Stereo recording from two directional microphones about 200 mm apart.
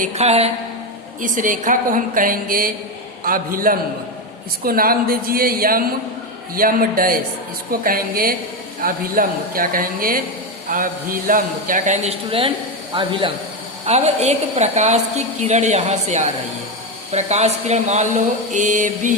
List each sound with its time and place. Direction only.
0.0 s a woman's voice: 35° right (ahead or behind)